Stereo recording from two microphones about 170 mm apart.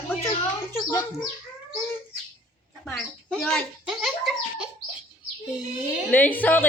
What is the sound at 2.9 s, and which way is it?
Speech, 5° left (ahead or behind).